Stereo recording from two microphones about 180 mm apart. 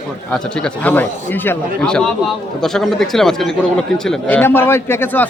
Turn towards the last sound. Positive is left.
turn(degrees=10)  # may be behind; listen again after turning